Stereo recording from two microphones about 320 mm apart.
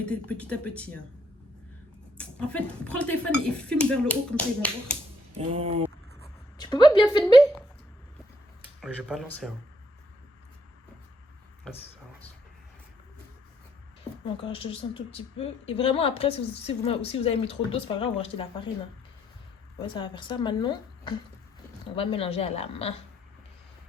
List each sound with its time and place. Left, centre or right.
0.0 s speech: centre
2.1 s speech: centre
5.5 s a sound: centre
6.6 s a sound: centre
8.8 s speech: centre
14.4 s speech: centre
20.0 s a woman's voice: centre